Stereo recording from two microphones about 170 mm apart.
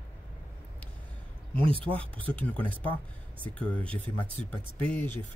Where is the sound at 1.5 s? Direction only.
30° right (ahead or behind).